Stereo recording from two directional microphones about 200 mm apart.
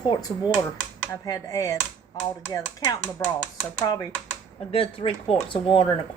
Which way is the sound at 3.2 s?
10° left (ahead or behind).